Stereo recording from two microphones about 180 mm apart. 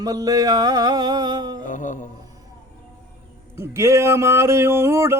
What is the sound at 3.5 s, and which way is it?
Mantra, 15° right (ahead or behind).